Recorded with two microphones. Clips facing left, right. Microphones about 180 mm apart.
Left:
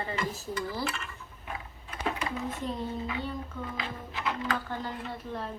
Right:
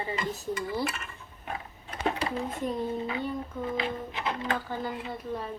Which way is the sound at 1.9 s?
35° right (ahead or behind).